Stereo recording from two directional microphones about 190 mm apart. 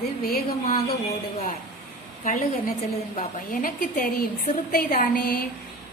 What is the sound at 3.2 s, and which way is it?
Speech, 45° left (ahead or behind).